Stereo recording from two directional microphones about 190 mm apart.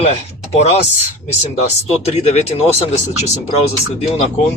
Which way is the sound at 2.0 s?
35° left (ahead or behind).